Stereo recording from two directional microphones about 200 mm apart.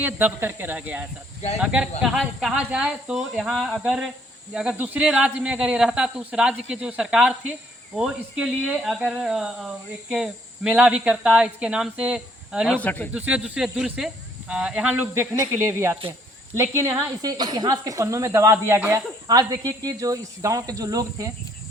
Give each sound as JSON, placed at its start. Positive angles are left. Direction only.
{"t": 0.0, "sound": "speech", "side_deg": -10}
{"t": 13.1, "sound": "speech", "side_deg": -5}